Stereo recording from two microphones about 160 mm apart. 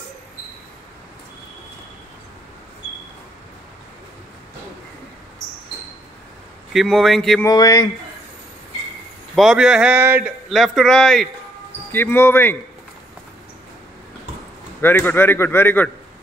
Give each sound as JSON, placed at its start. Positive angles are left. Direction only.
{"t": 6.7, "sound": "speech", "side_deg": 0}
{"t": 7.4, "sound": "speech", "side_deg": 20}
{"t": 9.3, "sound": "speech", "side_deg": -5}
{"t": 10.5, "sound": "a man's voice", "side_deg": 0}
{"t": 14.8, "sound": "a man's voice", "side_deg": 15}